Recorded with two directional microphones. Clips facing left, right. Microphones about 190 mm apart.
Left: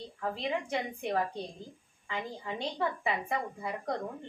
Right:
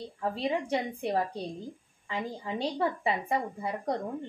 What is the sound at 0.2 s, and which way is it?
A woman's voice, 30° right (ahead or behind).